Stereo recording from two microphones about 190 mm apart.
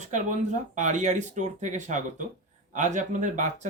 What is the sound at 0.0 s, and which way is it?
Speech, 40° right (ahead or behind).